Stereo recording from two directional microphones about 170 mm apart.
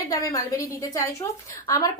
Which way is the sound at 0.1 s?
20° left (ahead or behind).